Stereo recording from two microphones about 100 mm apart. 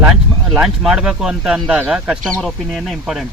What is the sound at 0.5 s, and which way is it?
Speech, 5° right (ahead or behind).